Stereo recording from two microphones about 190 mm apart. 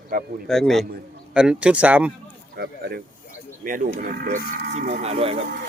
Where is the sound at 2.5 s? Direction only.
55° right (ahead or behind).